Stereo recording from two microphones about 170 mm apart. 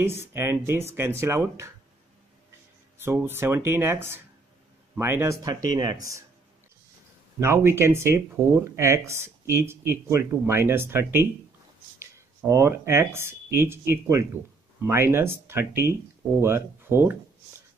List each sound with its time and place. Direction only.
0.0 s speech: 15° right (ahead or behind)
3.0 s speech: 15° right (ahead or behind)
7.3 s speech: 15° right (ahead or behind)
12.4 s speech: 15° right (ahead or behind)